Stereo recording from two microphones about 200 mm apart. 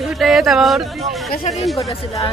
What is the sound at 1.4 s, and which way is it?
Speech, 35° left (ahead or behind).